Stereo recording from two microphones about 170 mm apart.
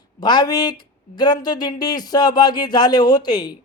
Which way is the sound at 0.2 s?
25° left (ahead or behind).